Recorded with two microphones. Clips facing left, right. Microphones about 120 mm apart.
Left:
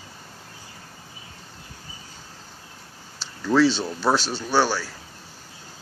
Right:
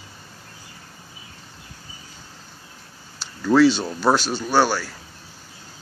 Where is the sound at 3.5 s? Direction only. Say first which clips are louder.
Right 3 dB; 5° right (ahead or behind).